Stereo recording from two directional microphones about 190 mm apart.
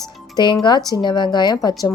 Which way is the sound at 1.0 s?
25° left (ahead or behind).